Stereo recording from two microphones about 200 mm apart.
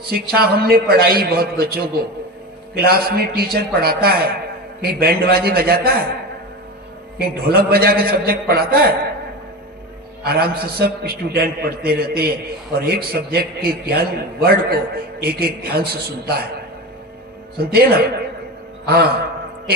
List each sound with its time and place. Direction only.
0.1 s a man's voice: 50° right (ahead or behind)
7.2 s a man's voice: 50° right (ahead or behind)
10.2 s a man's voice: 50° right (ahead or behind)
17.6 s a man's voice: 50° right (ahead or behind)